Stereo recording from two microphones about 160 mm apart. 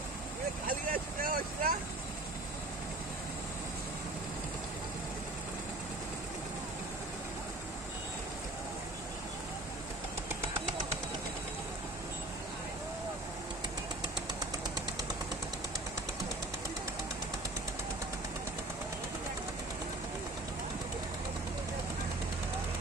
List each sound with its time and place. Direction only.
0.7 s vehicle: 60° right (ahead or behind)